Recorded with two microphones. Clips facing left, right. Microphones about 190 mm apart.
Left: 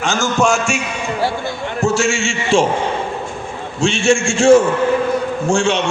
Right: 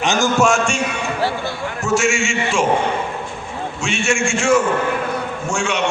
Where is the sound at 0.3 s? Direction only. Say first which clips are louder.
Left 3 dB; centre (ahead or behind).